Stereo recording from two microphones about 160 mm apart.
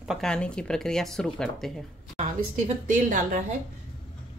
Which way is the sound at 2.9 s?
55° right (ahead or behind).